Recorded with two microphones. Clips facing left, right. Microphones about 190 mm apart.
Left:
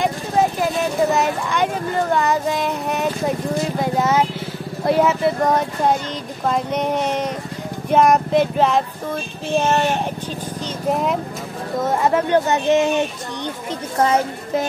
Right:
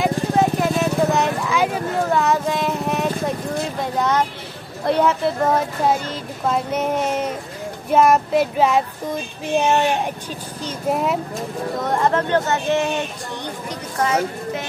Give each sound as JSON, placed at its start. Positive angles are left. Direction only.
{"t": 0.0, "sound": "vehicle", "side_deg": 0}
{"t": 4.8, "sound": "speech", "side_deg": 0}
{"t": 7.9, "sound": "female singing", "side_deg": -5}
{"t": 10.9, "sound": "speech", "side_deg": -5}
{"t": 11.8, "sound": "speech", "side_deg": 5}
{"t": 14.0, "sound": "speech", "side_deg": 35}